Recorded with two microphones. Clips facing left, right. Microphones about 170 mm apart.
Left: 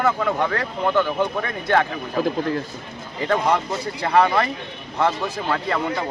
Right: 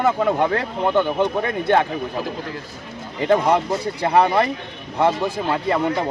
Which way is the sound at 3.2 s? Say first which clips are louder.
Right 3 dB; 20° right (ahead or behind).